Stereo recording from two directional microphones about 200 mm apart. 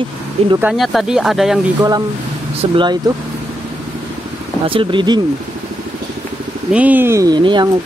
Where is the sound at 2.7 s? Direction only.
20° right (ahead or behind).